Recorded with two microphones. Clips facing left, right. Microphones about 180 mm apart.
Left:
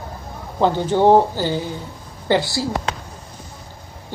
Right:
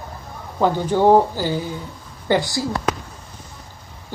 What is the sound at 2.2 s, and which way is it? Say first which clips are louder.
Speech: left 1 dB; 15° right (ahead or behind).